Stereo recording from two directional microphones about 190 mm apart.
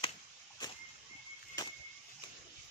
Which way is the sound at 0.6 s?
20° left (ahead or behind).